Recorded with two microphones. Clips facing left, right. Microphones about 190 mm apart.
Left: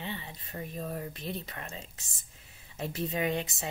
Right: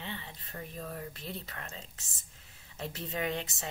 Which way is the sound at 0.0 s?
15° left (ahead or behind).